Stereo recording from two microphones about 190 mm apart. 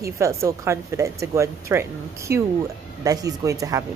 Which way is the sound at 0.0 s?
15° right (ahead or behind).